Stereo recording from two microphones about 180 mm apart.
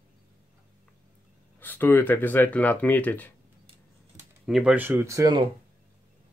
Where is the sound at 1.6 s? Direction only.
10° left (ahead or behind).